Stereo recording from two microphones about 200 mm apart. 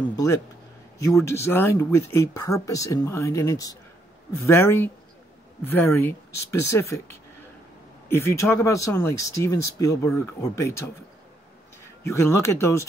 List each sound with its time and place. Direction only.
0.1 s speech: 15° left (ahead or behind)
12.1 s speech: 15° left (ahead or behind)